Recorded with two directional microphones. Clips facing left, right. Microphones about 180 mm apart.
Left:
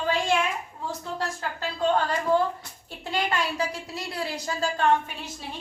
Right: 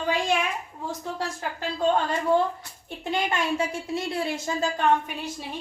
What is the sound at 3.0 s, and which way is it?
A woman's voice, 20° right (ahead or behind).